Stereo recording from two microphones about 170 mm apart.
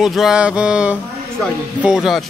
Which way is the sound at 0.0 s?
Centre (ahead or behind).